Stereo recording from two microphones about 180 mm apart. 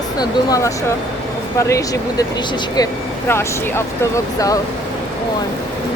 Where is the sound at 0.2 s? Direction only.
20° left (ahead or behind).